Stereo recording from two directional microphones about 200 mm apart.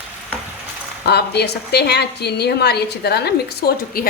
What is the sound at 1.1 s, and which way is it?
A woman's voice, 55° left (ahead or behind).